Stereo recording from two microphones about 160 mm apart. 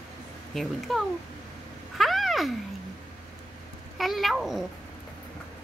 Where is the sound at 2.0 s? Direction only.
Centre (ahead or behind).